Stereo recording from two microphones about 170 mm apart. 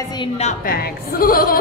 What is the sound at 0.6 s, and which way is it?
Speech, 60° left (ahead or behind).